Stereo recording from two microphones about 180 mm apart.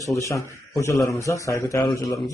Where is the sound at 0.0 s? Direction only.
15° left (ahead or behind).